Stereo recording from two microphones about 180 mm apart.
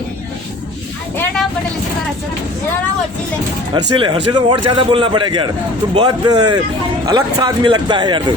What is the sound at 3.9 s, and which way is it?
Speech, 30° right (ahead or behind).